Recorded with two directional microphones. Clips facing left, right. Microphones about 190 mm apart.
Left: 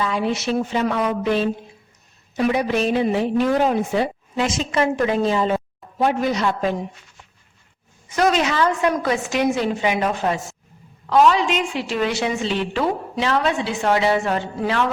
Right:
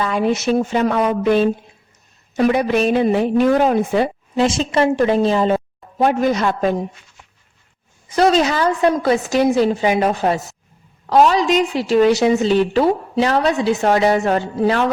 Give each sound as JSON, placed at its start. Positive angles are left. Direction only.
{"t": 0.0, "sound": "a woman's voice", "side_deg": -50}
{"t": 4.4, "sound": "a woman's voice", "side_deg": -30}
{"t": 6.0, "sound": "speech", "side_deg": -50}
{"t": 8.1, "sound": "a woman's voice", "side_deg": -35}